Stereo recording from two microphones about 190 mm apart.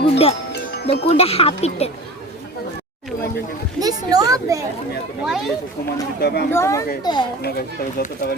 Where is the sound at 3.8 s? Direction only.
20° right (ahead or behind).